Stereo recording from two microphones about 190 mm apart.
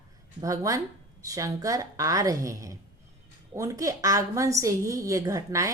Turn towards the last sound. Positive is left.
turn(degrees=-15)  # may be behind; listen again after turning